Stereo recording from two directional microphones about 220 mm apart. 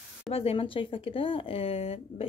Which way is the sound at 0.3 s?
25° left (ahead or behind).